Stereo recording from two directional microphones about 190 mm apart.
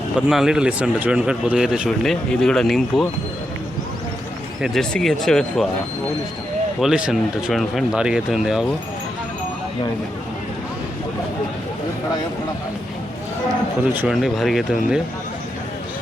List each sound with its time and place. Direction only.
0.3 s a man's voice: 5° right (ahead or behind)
4.6 s a man's voice: centre (ahead or behind)
6.7 s a man's voice: 5° right (ahead or behind)
13.8 s a man's voice: 10° right (ahead or behind)